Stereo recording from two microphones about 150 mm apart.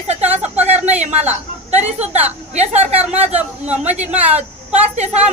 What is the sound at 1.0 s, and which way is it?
A woman's voice, 50° right (ahead or behind).